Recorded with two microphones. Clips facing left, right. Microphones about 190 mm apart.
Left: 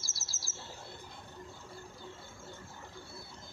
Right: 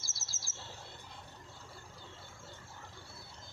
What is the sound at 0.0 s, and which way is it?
Bird flight, 50° right (ahead or behind).